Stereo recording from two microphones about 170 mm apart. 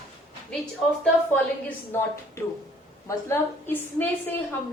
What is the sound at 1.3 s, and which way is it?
A woman's voice, 10° left (ahead or behind).